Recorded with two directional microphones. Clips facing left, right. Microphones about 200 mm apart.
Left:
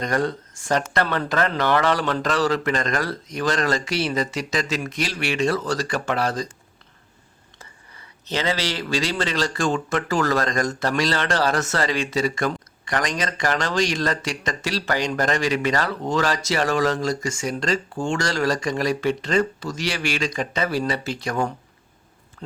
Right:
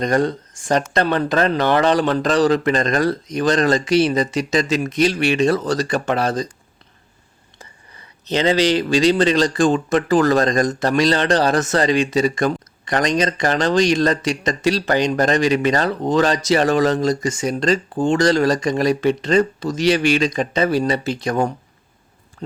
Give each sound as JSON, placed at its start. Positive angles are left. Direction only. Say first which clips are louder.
{"t": 0.0, "sound": "speech", "louder": "right 5 dB", "side_deg": -20}
{"t": 7.6, "sound": "speech", "louder": "right 3 dB", "side_deg": -20}